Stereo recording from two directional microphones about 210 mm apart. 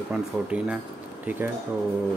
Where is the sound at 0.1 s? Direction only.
5° right (ahead or behind).